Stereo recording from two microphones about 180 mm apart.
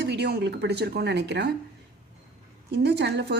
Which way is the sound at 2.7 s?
70° right (ahead or behind).